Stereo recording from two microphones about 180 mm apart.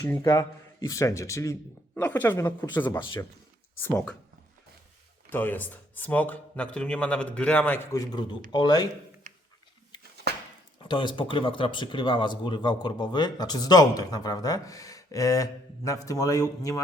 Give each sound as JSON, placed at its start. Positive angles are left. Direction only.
{"t": 0.1, "sound": "speech", "side_deg": 20}
{"t": 5.3, "sound": "speech", "side_deg": 10}
{"t": 7.9, "sound": "speech", "side_deg": 20}
{"t": 10.3, "sound": "a sound", "side_deg": -65}
{"t": 10.8, "sound": "speech", "side_deg": 25}